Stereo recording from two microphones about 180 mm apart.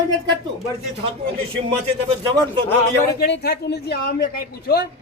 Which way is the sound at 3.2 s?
65° left (ahead or behind).